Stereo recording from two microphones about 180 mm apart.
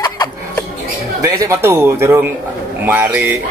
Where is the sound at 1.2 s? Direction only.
15° right (ahead or behind).